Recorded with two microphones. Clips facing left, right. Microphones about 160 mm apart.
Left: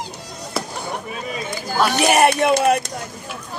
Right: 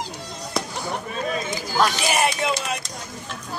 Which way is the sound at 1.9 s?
60° left (ahead or behind).